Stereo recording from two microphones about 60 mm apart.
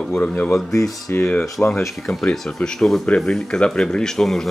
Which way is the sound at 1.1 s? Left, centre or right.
Left.